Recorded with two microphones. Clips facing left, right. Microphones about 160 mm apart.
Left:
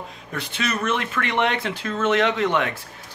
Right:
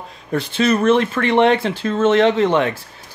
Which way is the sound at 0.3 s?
30° right (ahead or behind).